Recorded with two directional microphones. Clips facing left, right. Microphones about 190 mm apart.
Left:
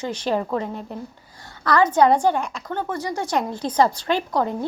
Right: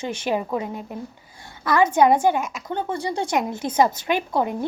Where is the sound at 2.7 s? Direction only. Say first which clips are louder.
Right 1 dB; 30° right (ahead or behind).